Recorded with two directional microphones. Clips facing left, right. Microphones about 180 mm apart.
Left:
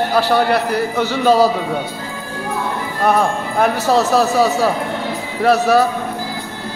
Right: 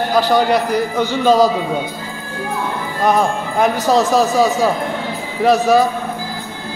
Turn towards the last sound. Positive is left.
turn(degrees=5)  # may be behind; listen again after turning